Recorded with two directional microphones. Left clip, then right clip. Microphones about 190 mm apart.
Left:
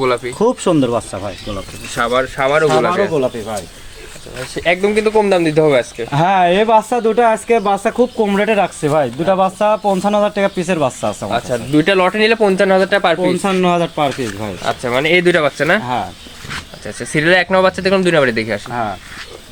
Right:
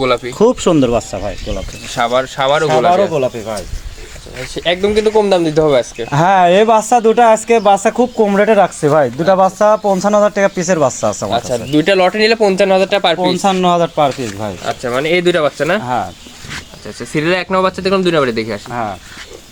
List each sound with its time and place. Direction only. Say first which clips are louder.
0.0 s speech: right 3 dB; 30° right (ahead or behind)
4.4 s speech: even; 10° right (ahead or behind)
6.1 s speech: right 3 dB; 40° right (ahead or behind)
11.3 s speech: right 2 dB; 5° right (ahead or behind)
13.4 s speech: right 3 dB; 25° right (ahead or behind)
14.6 s speech: left 1 dB; 5° left (ahead or behind)
16.8 s speech: left 2 dB; centre (ahead or behind)
18.7 s speech: even; 25° right (ahead or behind)